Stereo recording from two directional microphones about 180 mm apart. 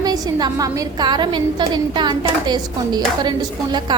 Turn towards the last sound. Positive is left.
turn(degrees=-25)  # may be behind; listen again after turning